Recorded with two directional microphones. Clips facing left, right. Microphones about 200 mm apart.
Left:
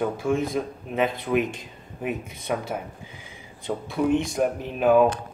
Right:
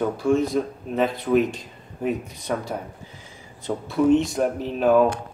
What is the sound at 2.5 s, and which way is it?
Speech, 10° left (ahead or behind).